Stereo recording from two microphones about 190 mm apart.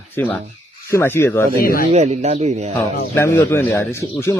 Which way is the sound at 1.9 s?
35° right (ahead or behind).